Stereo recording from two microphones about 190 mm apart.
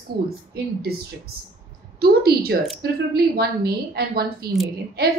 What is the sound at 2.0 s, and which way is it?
A woman's voice, 55° right (ahead or behind).